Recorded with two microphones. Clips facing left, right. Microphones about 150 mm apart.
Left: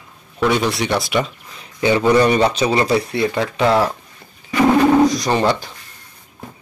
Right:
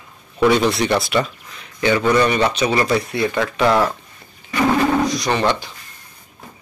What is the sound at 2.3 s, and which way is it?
Speech, 35° left (ahead or behind).